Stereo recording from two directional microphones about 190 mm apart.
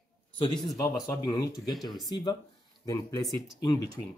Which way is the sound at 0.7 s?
20° left (ahead or behind).